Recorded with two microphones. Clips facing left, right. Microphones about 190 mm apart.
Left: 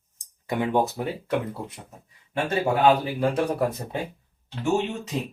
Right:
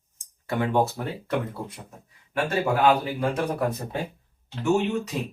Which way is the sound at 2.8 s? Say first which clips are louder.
Left 2 dB; 30° left (ahead or behind).